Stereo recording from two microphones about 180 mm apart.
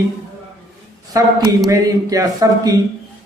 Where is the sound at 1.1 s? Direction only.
20° right (ahead or behind).